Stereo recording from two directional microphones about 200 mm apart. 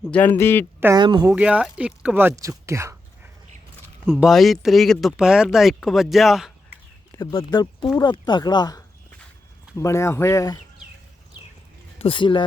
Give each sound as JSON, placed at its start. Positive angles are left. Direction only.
{"t": 0.0, "sound": "speech", "side_deg": 5}
{"t": 0.9, "sound": "speech", "side_deg": -20}
{"t": 1.3, "sound": "speech", "side_deg": -5}
{"t": 4.0, "sound": "speech", "side_deg": 0}
{"t": 7.2, "sound": "speech", "side_deg": 20}
{"t": 11.9, "sound": "speech", "side_deg": 25}